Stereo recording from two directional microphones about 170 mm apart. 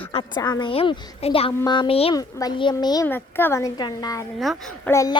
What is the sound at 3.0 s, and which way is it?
Speech, 10° left (ahead or behind).